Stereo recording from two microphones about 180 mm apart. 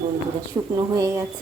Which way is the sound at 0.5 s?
20° right (ahead or behind).